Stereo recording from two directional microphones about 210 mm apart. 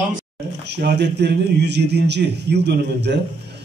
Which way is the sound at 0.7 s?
55° right (ahead or behind).